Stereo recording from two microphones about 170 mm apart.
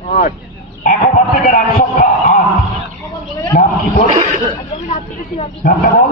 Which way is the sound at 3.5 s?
55° left (ahead or behind).